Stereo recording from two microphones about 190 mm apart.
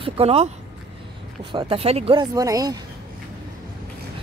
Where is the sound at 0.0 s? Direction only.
30° right (ahead or behind).